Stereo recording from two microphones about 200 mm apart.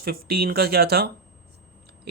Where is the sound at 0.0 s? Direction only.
50° right (ahead or behind).